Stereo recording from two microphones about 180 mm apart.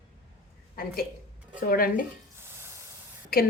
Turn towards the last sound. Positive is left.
turn(degrees=55)  # may be behind; listen again after turning